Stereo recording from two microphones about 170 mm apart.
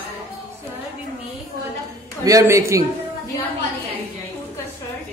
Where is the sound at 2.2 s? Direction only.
20° right (ahead or behind).